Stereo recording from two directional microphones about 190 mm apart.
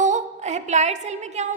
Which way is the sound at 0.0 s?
40° right (ahead or behind).